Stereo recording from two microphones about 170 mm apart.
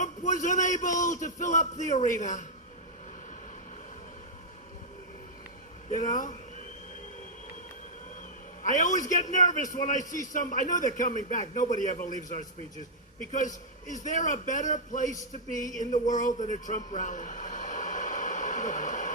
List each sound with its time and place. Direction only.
0.0 s a man's voice: 45° left (ahead or behind)
5.9 s a man's voice: 50° left (ahead or behind)
8.6 s a man's voice: 50° left (ahead or behind)
13.8 s a man's voice: 45° left (ahead or behind)
15.9 s a sound: 45° left (ahead or behind)